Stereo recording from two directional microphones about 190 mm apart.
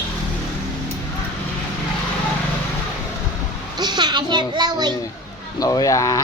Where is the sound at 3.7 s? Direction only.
20° right (ahead or behind).